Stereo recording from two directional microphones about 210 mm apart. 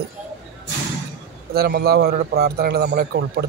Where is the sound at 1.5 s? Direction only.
45° right (ahead or behind).